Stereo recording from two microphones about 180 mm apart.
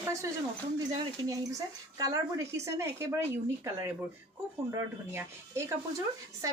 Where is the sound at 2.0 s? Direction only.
20° right (ahead or behind).